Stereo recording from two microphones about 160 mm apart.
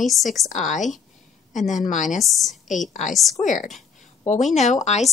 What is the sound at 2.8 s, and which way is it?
Speech, 50° left (ahead or behind).